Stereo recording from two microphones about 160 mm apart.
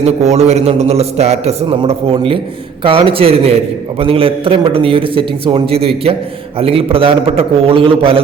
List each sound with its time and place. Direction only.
0.0 s a man's voice: 45° right (ahead or behind)